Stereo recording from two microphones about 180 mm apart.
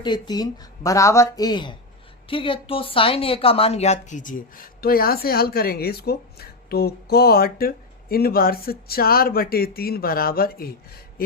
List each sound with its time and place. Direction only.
0.0 s a woman's voice: 25° left (ahead or behind); by 11.0 s 55° left (ahead or behind)